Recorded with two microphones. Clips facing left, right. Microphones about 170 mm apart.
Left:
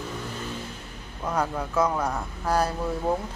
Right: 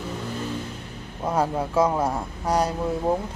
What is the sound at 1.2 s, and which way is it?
Speech, 25° right (ahead or behind).